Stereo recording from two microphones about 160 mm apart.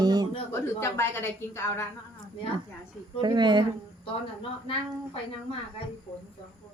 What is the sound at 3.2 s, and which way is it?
Speech, 30° right (ahead or behind).